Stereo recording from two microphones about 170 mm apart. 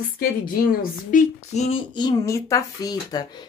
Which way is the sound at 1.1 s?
40° left (ahead or behind).